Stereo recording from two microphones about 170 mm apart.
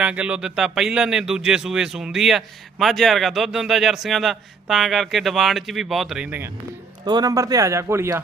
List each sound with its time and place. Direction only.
0.0 s speech: 5° right (ahead or behind)
7.0 s a man's voice: 25° right (ahead or behind)